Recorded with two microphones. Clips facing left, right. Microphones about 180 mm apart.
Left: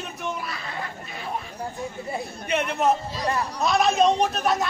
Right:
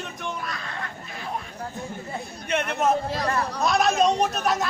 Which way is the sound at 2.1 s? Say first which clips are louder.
Left 1 dB; centre (ahead or behind).